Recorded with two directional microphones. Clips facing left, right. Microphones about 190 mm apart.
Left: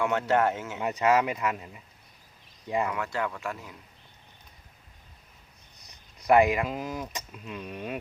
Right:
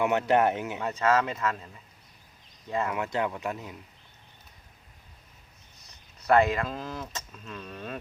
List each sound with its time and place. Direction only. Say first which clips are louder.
0.0 s speech: right 1 dB; 20° right (ahead or behind)
0.8 s speech: left 3 dB; 15° left (ahead or behind)
2.9 s speech: right 2 dB; 20° right (ahead or behind)
5.8 s speech: left 3 dB; 15° left (ahead or behind)